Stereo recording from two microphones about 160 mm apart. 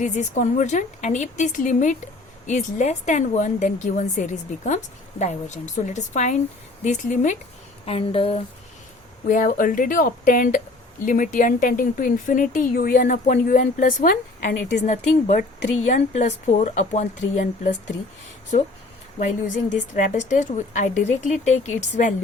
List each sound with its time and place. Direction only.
0.0 s a woman's voice: 50° left (ahead or behind)
7.9 s speech: 35° left (ahead or behind)
9.2 s speech: 55° left (ahead or behind); by 14.8 s 75° left (ahead or behind)
14.8 s a woman's voice: 50° left (ahead or behind)
19.7 s a woman's voice: 50° left (ahead or behind)